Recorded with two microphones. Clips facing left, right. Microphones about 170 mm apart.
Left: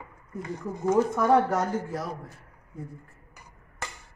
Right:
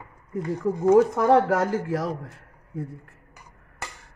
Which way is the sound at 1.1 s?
90° right.